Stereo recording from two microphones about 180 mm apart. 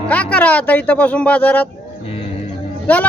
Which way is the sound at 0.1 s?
5° left (ahead or behind).